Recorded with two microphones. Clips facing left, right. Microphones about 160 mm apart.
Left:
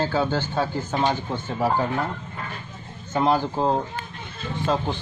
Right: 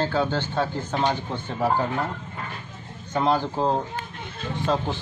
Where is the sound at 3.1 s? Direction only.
5° left (ahead or behind).